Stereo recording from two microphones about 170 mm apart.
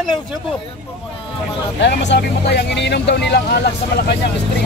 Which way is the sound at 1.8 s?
85° left.